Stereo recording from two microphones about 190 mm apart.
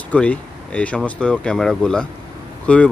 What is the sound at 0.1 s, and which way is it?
Speech, 5° left (ahead or behind).